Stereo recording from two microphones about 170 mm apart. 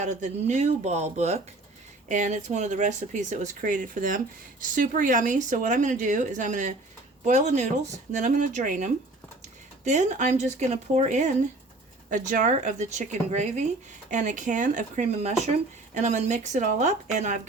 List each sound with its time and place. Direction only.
0.0 s speech: 45° right (ahead or behind)